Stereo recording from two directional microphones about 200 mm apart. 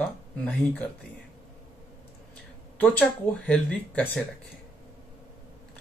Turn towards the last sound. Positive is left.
turn(degrees=5)  # may be behind; listen again after turning